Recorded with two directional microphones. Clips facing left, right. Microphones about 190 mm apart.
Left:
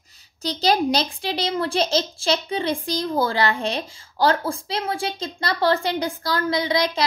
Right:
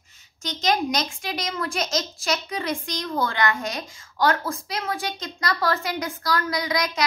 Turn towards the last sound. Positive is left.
turn(degrees=30)  # may be behind; listen again after turning